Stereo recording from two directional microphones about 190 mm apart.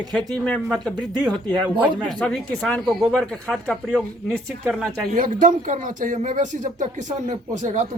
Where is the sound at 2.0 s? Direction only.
5° left (ahead or behind).